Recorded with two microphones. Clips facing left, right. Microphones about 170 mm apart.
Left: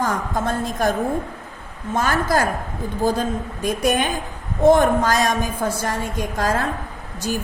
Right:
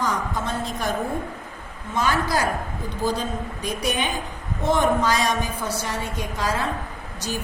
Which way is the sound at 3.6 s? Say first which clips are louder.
Left 6 dB; 45° left (ahead or behind).